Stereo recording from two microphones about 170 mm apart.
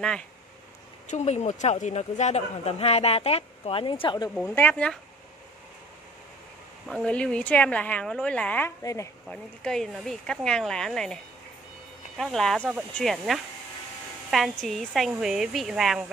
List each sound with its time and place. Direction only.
1.0 s speech: 40° left (ahead or behind)
4.4 s a woman's voice: 10° left (ahead or behind)
6.9 s a woman's voice: 5° left (ahead or behind)
9.3 s speech: 5° left (ahead or behind)
12.2 s speech: centre (ahead or behind)